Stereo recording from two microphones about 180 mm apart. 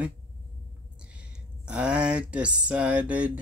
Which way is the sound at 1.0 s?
5° right (ahead or behind).